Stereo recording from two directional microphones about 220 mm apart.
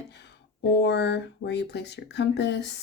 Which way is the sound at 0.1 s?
50° left (ahead or behind).